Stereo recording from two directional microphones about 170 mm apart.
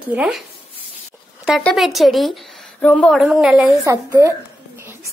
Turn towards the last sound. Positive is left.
turn(degrees=-20)  # may be behind; listen again after turning